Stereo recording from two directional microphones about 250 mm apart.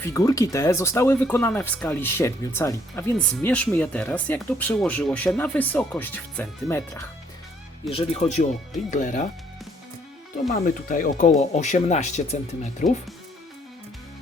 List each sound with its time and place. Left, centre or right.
0.0 s speech: centre
7.9 s speech: left
10.5 s speech: left